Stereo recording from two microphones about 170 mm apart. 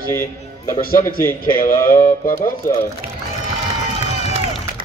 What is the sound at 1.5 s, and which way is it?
Music, 55° left (ahead or behind).